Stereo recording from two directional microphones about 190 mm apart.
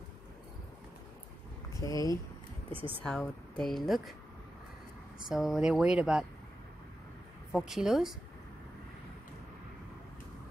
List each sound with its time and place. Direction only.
1.7 s a sound: 20° left (ahead or behind)
2.7 s speech: 30° right (ahead or behind)
3.1 s speech: centre (ahead or behind)
5.3 s speech: centre (ahead or behind)
7.5 s speech: centre (ahead or behind)